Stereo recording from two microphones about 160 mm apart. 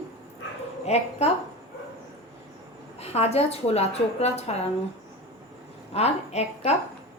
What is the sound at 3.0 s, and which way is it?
A woman's voice, 40° left (ahead or behind).